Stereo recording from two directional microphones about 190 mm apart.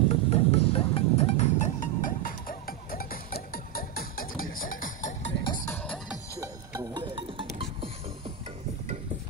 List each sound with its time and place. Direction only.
0.1 s music: 30° left (ahead or behind)
5.4 s music: 20° left (ahead or behind)
6.4 s music: 15° right (ahead or behind)